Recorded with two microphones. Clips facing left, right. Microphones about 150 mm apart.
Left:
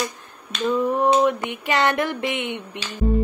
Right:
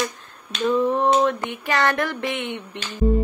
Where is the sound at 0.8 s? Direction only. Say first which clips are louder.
Even; 10° left (ahead or behind).